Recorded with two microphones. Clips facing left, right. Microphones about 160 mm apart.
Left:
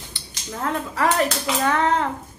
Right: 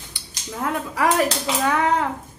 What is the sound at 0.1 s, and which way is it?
A child's voice, 10° right (ahead or behind).